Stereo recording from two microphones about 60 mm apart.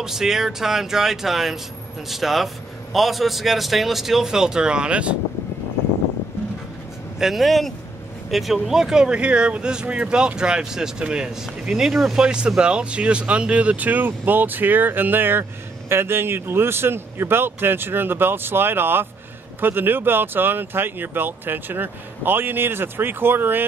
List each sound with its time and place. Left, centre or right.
0.0 s a man's voice: centre
7.2 s a man's voice: centre; by 23.6 s right